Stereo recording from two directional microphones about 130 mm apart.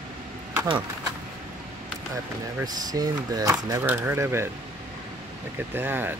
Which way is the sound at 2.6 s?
30° right (ahead or behind).